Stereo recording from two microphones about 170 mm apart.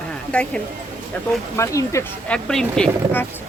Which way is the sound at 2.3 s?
5° left (ahead or behind).